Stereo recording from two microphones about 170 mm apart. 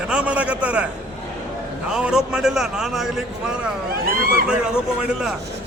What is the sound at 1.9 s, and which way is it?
A man's voice, 5° right (ahead or behind).